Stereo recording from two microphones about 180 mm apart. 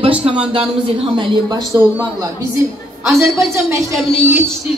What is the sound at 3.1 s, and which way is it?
Speech, centre (ahead or behind).